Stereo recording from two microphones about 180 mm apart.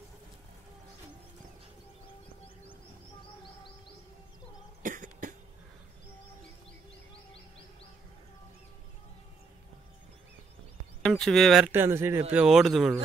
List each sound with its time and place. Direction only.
4.8 s cough: 45° right (ahead or behind)
11.0 s speech: 5° left (ahead or behind)